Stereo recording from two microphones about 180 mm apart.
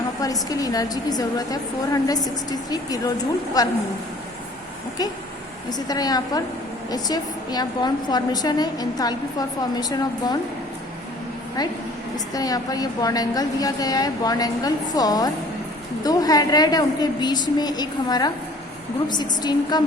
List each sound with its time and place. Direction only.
0.2 s a woman's voice: 20° left (ahead or behind)
5.7 s a woman's voice: 20° left (ahead or behind)
12.3 s a woman's voice: 20° left (ahead or behind)